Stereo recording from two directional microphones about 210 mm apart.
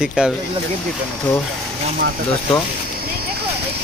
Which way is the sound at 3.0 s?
45° right (ahead or behind).